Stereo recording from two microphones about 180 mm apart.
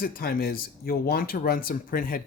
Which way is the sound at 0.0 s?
55° left (ahead or behind).